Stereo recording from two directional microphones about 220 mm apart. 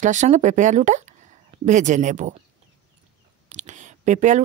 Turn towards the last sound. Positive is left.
turn(degrees=-35)  # may be behind; listen again after turning